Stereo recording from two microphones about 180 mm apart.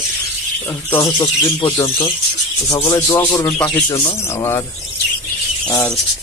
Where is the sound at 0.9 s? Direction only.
20° left (ahead or behind).